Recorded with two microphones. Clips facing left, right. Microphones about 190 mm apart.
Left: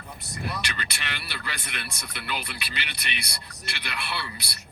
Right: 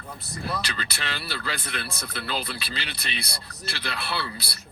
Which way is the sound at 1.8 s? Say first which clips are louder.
Right 4 dB; 30° right (ahead or behind).